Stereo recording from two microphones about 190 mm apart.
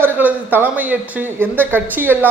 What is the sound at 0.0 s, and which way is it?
A man's voice, 10° right (ahead or behind).